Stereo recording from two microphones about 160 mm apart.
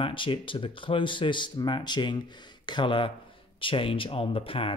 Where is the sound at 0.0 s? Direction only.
30° left (ahead or behind).